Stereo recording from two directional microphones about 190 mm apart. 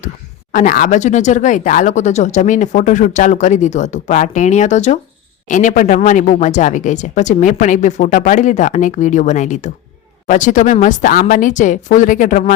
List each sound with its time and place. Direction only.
0.5 s speech: 45° left (ahead or behind)